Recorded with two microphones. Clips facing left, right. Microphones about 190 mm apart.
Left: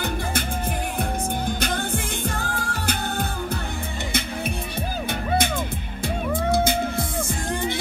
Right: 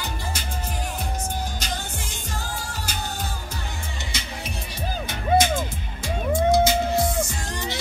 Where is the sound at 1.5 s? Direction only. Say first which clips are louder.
Left 7 dB; 55° left (ahead or behind).